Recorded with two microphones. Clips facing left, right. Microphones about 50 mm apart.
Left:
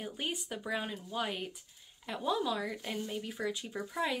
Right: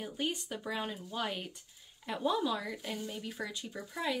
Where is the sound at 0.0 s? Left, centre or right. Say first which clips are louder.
Right 2 dB; centre.